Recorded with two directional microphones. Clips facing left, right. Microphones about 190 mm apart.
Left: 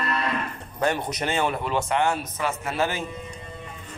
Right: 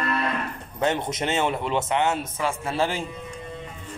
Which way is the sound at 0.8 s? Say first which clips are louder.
Right 1 dB; 20° right (ahead or behind).